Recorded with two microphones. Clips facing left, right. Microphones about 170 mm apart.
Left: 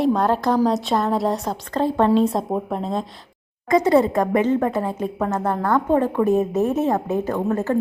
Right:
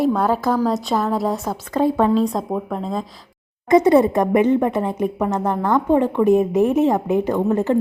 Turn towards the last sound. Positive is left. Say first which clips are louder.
# right 3 dB
turn(degrees=-20)  # may be behind; listen again after turning